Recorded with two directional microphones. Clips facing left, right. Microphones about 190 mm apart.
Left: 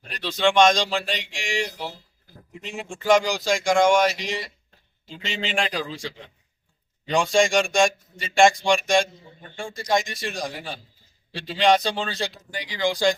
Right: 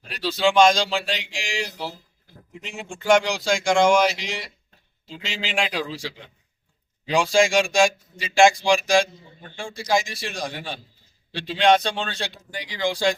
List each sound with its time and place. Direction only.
0.1 s speech: 5° right (ahead or behind)